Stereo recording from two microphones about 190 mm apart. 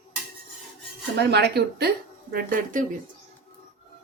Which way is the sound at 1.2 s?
60° right (ahead or behind).